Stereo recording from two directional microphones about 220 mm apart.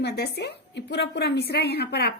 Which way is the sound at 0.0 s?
50° left (ahead or behind).